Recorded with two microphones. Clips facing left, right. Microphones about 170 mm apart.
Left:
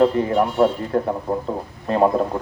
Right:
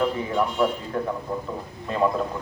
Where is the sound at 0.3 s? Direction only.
40° left (ahead or behind).